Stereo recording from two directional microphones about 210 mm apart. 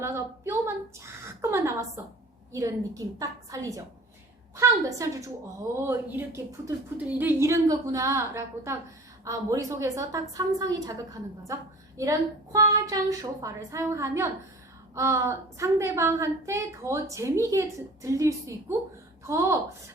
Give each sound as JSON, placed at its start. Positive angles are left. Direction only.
{"t": 0.0, "sound": "a woman's voice", "side_deg": -10}